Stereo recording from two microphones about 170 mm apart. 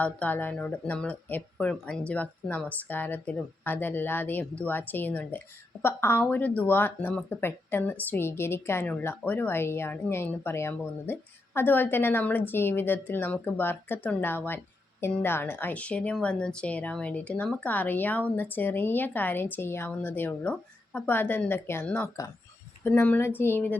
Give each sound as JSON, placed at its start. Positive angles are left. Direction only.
{"t": 0.0, "sound": "a woman's voice", "side_deg": 10}